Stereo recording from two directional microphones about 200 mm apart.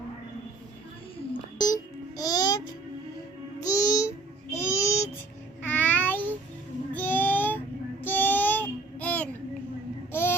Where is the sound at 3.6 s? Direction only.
15° left (ahead or behind).